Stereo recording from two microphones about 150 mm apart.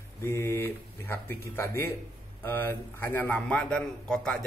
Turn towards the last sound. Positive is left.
turn(degrees=5)  # may be behind; listen again after turning